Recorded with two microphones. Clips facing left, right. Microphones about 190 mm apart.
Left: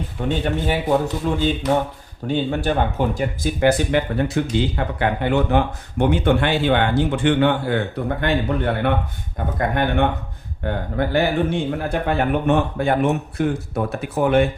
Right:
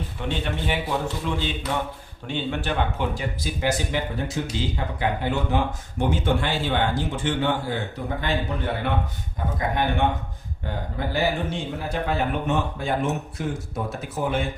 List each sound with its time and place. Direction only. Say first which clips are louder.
0.2 s a man's voice: left 6 dB; 45° left (ahead or behind); by 14.4 s 65° left (ahead or behind)